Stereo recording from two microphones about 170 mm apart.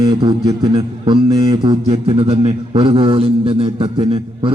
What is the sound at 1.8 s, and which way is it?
A man's voice, 35° right (ahead or behind).